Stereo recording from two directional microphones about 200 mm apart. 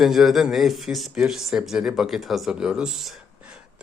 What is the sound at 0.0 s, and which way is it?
Speech, centre (ahead or behind).